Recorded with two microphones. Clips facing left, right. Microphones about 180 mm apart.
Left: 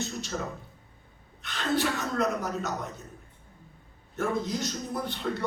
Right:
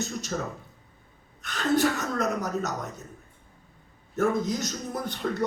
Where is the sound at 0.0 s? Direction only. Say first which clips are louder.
Right 2 dB; 45° right (ahead or behind).